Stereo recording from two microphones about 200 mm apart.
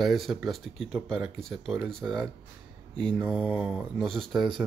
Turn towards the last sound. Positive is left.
turn(degrees=0)  # may be behind; listen again after turning